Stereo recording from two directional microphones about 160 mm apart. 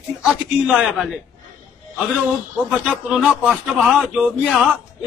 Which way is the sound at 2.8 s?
5° right (ahead or behind).